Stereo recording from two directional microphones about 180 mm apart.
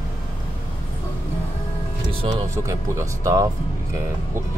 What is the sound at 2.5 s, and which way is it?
Speech, 15° right (ahead or behind).